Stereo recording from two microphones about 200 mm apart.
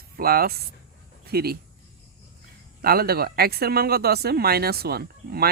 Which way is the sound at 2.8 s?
50° right (ahead or behind).